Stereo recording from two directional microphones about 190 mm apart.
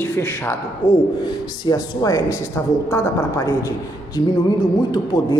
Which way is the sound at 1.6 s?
20° left (ahead or behind).